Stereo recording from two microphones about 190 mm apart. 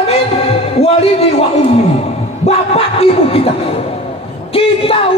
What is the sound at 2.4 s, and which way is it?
Music, 30° left (ahead or behind).